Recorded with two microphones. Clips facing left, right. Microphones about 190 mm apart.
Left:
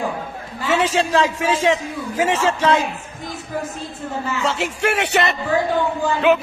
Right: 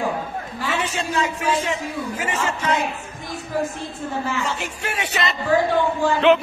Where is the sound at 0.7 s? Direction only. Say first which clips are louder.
Left 7 dB; 90° left.